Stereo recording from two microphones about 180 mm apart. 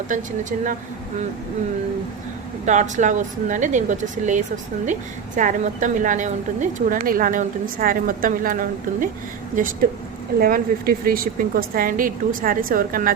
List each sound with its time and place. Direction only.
0.1 s a woman's voice: 45° right (ahead or behind)
2.6 s a woman's voice: 40° right (ahead or behind)